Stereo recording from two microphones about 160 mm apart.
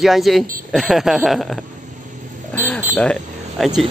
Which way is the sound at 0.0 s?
Centre (ahead or behind).